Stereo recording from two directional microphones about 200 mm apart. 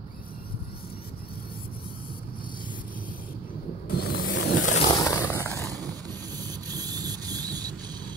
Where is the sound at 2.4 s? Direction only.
45° left (ahead or behind).